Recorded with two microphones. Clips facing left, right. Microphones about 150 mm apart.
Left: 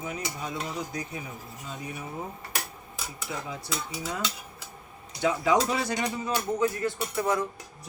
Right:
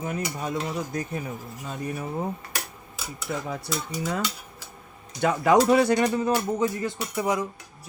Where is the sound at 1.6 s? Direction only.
55° right (ahead or behind).